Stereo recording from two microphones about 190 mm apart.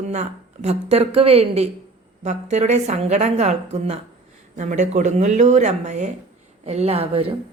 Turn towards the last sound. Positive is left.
turn(degrees=-30)  # may be behind; listen again after turning